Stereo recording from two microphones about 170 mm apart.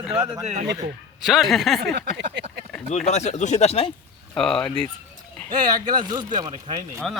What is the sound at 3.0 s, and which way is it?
Speech, 40° left (ahead or behind).